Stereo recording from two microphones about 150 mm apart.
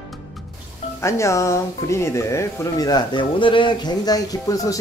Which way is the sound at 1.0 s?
20° left (ahead or behind).